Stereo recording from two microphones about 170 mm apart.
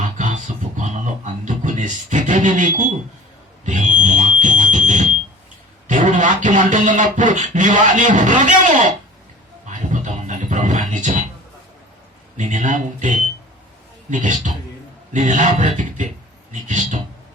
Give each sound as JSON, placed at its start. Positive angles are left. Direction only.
{"t": 0.0, "sound": "a sound", "side_deg": -50}
{"t": 5.9, "sound": "music", "side_deg": -50}
{"t": 9.6, "sound": "speech", "side_deg": -45}
{"t": 12.4, "sound": "music", "side_deg": -50}